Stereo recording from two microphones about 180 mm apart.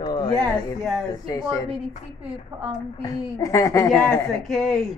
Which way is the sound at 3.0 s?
20° left (ahead or behind).